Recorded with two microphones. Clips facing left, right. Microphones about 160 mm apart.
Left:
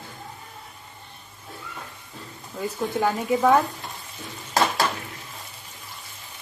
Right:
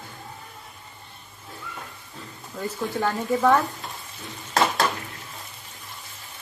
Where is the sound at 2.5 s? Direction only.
Centre (ahead or behind).